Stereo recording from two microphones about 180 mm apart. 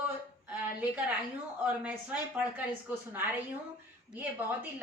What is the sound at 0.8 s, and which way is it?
A woman's voice, 10° right (ahead or behind).